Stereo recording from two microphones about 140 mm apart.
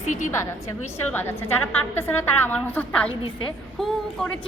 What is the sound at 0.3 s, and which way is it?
A woman's voice, 20° left (ahead or behind).